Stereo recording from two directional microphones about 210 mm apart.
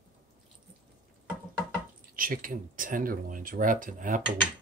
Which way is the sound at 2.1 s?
40° right (ahead or behind).